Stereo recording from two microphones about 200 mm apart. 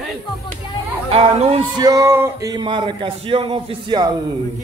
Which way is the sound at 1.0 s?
30° right (ahead or behind).